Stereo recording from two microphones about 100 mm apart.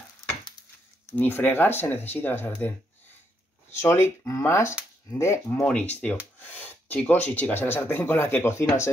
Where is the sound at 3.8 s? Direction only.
25° left (ahead or behind).